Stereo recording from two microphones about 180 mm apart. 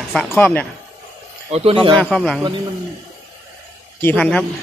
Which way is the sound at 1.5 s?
30° right (ahead or behind).